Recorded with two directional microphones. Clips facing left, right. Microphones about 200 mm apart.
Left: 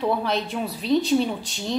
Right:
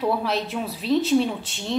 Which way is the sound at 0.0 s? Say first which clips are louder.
Even; 5° right (ahead or behind).